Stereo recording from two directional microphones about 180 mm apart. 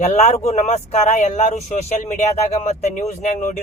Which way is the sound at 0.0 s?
40° left (ahead or behind).